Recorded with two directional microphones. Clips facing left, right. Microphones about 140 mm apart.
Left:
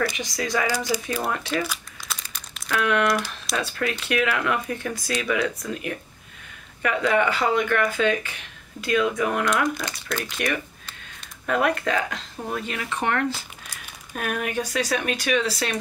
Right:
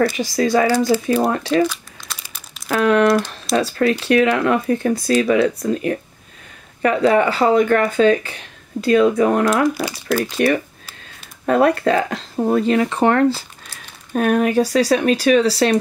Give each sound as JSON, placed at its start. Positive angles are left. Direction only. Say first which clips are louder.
{"t": 0.1, "sound": "speech", "louder": "right 10 dB", "side_deg": -30}
{"t": 2.1, "sound": "crumpling", "louder": "right 1 dB", "side_deg": -5}
{"t": 2.7, "sound": "speech", "louder": "right 8 dB", "side_deg": -35}